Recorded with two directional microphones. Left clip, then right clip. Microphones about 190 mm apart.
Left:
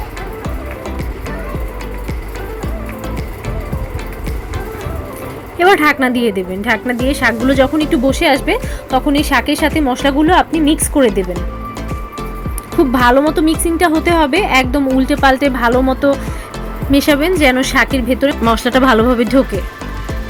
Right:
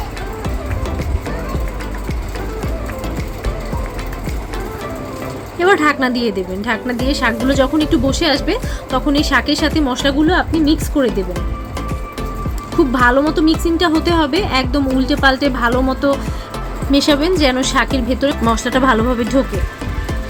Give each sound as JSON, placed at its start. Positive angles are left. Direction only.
{"t": 5.5, "sound": "a woman's voice", "side_deg": 15}
{"t": 12.9, "sound": "a woman's voice", "side_deg": 15}
{"t": 18.4, "sound": "speech", "side_deg": 20}